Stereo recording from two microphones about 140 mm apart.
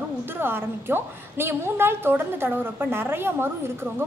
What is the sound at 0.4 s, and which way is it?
A woman's voice, 15° right (ahead or behind).